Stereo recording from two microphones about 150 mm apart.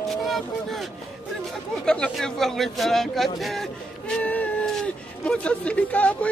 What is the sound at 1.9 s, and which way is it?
A man's voice, 5° left (ahead or behind).